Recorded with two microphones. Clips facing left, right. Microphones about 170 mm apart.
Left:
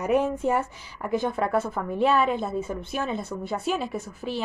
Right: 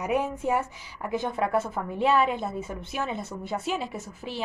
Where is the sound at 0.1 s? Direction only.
10° right (ahead or behind).